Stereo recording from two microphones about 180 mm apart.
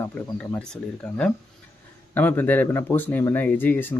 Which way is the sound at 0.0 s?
5° left (ahead or behind).